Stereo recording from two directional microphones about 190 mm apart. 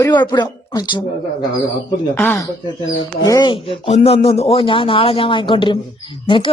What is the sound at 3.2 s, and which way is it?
Speech, 20° left (ahead or behind).